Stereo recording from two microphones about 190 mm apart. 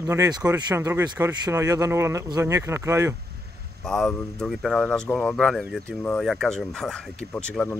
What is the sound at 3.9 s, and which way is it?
Speech, 5° left (ahead or behind).